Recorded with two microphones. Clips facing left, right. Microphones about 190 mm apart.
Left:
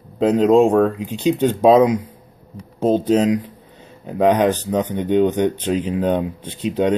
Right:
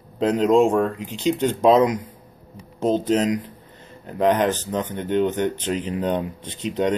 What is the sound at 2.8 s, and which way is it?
Speech, 10° left (ahead or behind).